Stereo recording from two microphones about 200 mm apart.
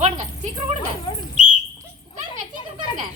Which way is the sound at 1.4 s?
40° right (ahead or behind).